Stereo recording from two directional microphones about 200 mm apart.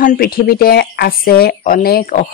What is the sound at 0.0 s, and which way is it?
Speech, 45° left (ahead or behind).